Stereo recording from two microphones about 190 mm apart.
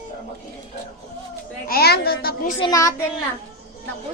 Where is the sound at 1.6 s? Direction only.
55° left (ahead or behind).